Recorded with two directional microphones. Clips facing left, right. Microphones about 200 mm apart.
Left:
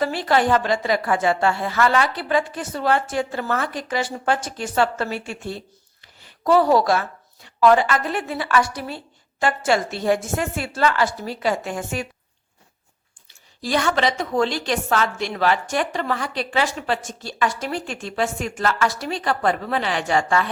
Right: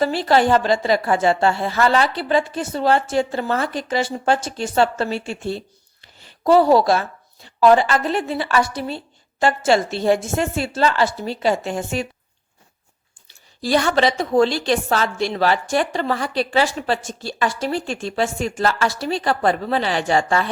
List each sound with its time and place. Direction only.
0.0 s a woman's voice: 30° right (ahead or behind)
13.2 s a woman's voice: 35° right (ahead or behind)